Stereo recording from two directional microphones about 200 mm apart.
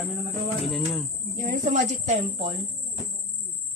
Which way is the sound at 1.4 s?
40° right (ahead or behind).